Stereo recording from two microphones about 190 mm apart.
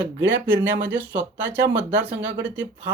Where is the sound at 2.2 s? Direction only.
75° right (ahead or behind).